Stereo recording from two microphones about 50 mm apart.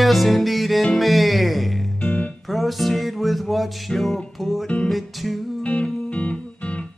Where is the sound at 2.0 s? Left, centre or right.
Left.